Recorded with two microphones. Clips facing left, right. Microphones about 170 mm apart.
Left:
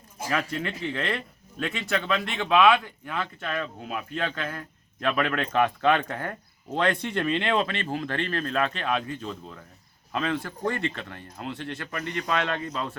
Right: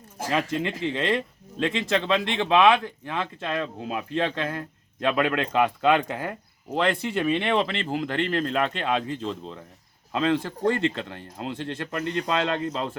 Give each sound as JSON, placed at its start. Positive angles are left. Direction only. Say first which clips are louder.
{"t": 0.3, "sound": "speech", "louder": "right 3 dB", "side_deg": -20}